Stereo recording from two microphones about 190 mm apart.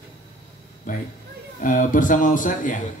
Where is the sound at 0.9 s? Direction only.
45° left (ahead or behind).